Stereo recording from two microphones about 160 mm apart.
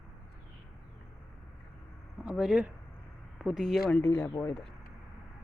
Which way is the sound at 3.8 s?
10° left (ahead or behind).